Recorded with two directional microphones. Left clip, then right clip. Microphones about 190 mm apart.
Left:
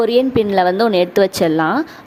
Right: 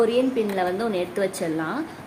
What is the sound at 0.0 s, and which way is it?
A woman's voice, 45° left (ahead or behind).